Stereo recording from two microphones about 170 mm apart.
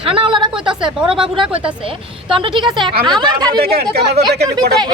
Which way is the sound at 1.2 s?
30° right (ahead or behind).